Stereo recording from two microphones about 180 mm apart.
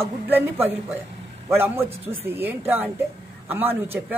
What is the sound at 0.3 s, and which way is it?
A man's voice, 10° right (ahead or behind).